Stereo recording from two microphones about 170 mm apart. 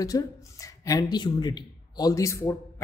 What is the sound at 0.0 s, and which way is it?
Speech, 20° left (ahead or behind).